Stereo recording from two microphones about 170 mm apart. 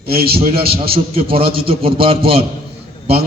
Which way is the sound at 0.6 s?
65° right (ahead or behind).